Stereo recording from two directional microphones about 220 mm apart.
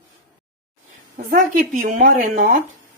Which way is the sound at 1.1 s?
40° right (ahead or behind).